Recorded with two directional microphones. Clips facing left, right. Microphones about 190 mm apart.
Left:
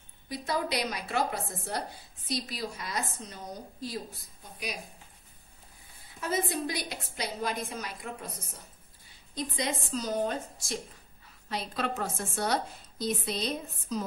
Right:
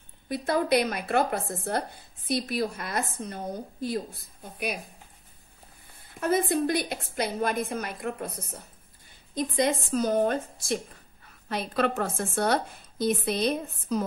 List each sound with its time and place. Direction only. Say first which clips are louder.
0.3 s a woman's voice: right 7 dB; 55° right (ahead or behind)
6.1 s a woman's voice: right 6 dB; 55° right (ahead or behind)